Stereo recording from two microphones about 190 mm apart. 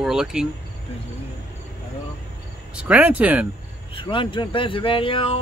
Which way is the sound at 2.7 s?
5° right (ahead or behind).